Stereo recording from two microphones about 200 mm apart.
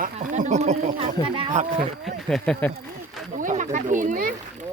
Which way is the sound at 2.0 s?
5° left (ahead or behind).